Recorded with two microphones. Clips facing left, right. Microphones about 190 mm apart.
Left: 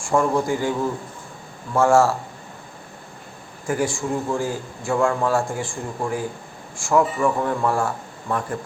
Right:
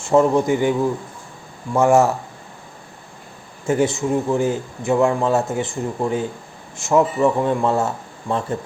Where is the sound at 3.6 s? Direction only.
25° right (ahead or behind).